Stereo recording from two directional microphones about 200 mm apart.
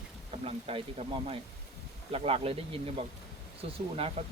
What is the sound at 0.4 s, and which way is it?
Speech, 30° right (ahead or behind).